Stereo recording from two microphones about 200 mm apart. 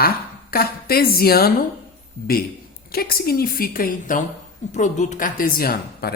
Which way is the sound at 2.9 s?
50° left (ahead or behind).